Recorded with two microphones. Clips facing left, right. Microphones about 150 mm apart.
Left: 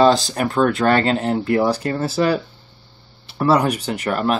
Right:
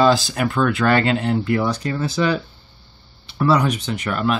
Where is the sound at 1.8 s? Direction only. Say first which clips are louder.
Left 2 dB; 50° left (ahead or behind).